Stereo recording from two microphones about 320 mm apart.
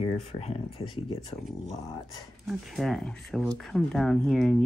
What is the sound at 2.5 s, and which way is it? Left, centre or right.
Speech, centre.